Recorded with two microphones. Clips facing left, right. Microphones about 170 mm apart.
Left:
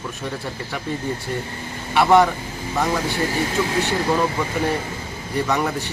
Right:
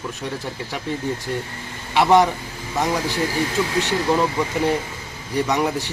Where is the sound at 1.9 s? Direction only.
20° right (ahead or behind).